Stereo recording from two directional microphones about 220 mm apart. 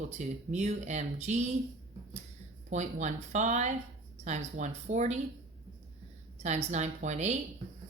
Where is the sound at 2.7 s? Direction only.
35° right (ahead or behind).